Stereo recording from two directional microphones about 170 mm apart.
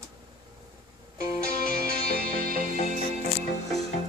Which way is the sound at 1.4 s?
65° right (ahead or behind).